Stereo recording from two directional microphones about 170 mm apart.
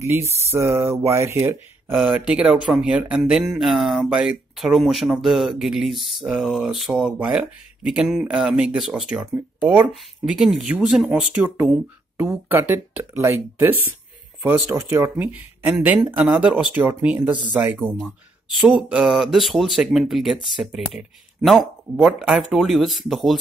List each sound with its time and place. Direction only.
0.5 s speech: 15° right (ahead or behind); by 23.3 s centre (ahead or behind)